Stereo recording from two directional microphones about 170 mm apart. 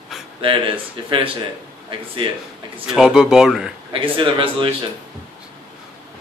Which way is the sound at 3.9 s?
30° right (ahead or behind).